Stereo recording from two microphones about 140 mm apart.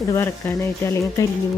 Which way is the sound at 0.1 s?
20° left (ahead or behind).